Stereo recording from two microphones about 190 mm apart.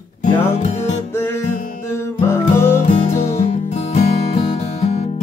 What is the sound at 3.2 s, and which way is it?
Music, 35° left (ahead or behind).